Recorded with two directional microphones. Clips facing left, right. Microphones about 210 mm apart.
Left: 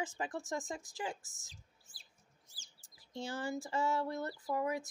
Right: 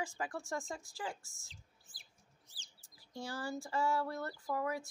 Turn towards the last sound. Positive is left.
turn(degrees=20)  # may be behind; listen again after turning